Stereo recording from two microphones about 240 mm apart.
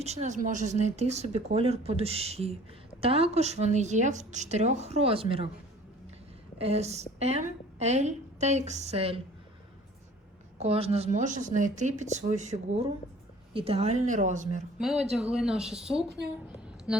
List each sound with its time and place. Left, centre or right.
0.0 s a woman's voice: right
6.6 s a woman's voice: right
10.6 s speech: right
14.8 s speech: centre
16.0 s a woman's voice: right
16.6 s music: centre